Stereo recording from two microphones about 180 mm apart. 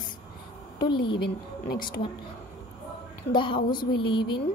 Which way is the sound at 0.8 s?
25° left (ahead or behind).